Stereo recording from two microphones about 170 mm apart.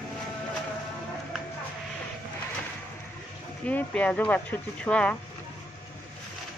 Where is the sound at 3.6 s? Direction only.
10° left (ahead or behind).